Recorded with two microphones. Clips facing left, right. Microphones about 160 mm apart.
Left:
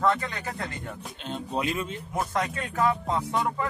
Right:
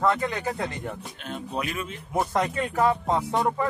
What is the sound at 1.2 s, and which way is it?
Speech, 25° left (ahead or behind).